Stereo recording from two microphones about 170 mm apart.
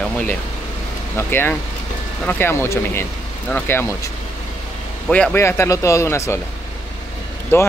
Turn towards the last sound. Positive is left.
turn(degrees=15)  # may be behind; listen again after turning